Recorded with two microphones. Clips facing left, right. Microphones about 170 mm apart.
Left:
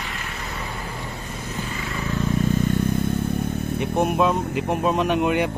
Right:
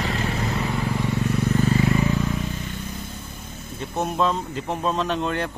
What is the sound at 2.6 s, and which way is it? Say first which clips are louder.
Vehicle: left 12 dB; 55° left (ahead or behind).